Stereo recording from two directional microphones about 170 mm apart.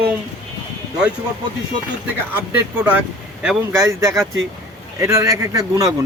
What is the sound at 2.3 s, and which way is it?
A man's voice, 10° right (ahead or behind).